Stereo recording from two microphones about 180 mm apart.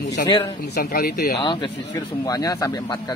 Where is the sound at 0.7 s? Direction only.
60° left (ahead or behind).